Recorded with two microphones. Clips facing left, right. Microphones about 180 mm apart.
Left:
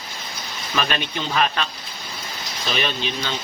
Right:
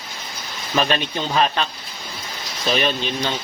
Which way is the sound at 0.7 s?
30° right (ahead or behind).